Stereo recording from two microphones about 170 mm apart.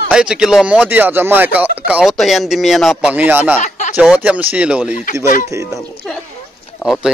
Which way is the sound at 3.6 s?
45° left (ahead or behind).